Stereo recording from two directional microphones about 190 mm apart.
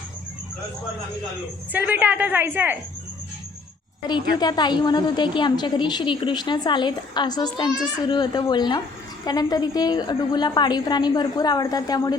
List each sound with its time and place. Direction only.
1.7 s a woman's voice: 10° right (ahead or behind)
4.4 s a woman's voice: 20° left (ahead or behind)